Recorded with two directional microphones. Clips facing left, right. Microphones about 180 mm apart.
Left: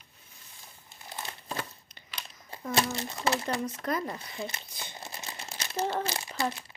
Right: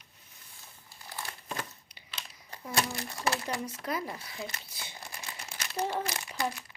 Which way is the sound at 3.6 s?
10° right (ahead or behind).